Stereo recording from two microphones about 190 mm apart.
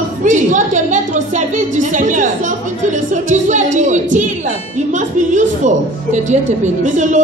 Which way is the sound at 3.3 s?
40° right (ahead or behind).